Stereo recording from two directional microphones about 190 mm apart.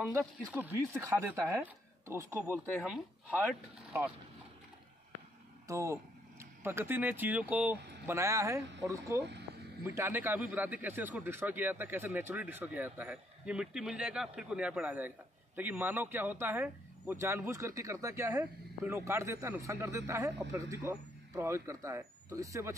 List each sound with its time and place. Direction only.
0.2 s a man's voice: 5° right (ahead or behind)
2.6 s speech: 10° left (ahead or behind)
2.9 s speech: 5° right (ahead or behind)
5.7 s a man's voice: 15° right (ahead or behind)